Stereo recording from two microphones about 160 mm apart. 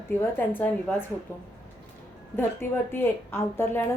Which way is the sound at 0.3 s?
10° left (ahead or behind).